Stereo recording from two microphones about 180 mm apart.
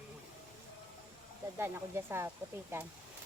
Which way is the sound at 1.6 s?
10° right (ahead or behind).